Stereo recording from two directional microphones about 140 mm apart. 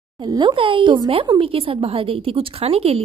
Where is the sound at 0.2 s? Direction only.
30° right (ahead or behind).